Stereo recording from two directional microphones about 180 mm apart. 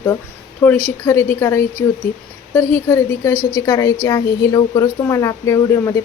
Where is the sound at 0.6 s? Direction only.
15° left (ahead or behind).